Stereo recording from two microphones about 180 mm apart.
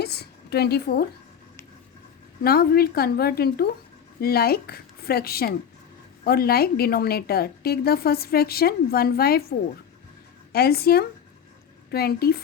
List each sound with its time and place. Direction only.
0.0 s a woman's voice: 65° left (ahead or behind)
2.4 s a woman's voice: 55° left (ahead or behind)